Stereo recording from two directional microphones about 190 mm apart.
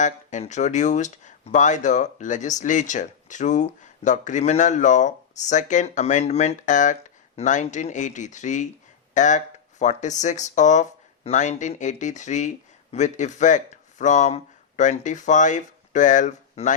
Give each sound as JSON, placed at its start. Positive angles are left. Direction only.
{"t": 0.0, "sound": "speech", "side_deg": 40}